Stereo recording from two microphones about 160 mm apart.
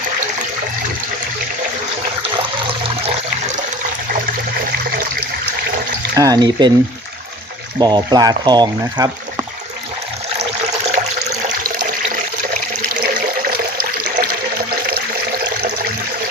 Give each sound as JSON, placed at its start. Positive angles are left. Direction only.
{"t": 6.1, "sound": "speech", "side_deg": -20}
{"t": 7.8, "sound": "speech", "side_deg": -25}
{"t": 13.0, "sound": "water", "side_deg": -70}